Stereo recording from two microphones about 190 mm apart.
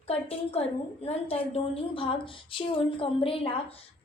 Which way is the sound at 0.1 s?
30° left (ahead or behind).